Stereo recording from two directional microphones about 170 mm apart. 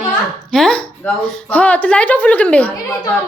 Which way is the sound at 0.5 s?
5° left (ahead or behind).